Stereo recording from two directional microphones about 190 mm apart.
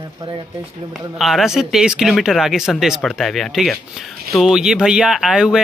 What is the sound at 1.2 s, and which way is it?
Speech, centre (ahead or behind).